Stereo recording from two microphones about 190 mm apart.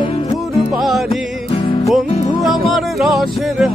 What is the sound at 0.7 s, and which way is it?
Music, centre (ahead or behind).